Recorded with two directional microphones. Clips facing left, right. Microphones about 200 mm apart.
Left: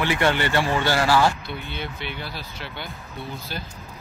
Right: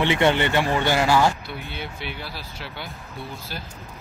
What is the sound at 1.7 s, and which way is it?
Speech, 5° right (ahead or behind).